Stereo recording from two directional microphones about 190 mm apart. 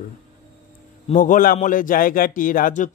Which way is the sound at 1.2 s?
45° left (ahead or behind).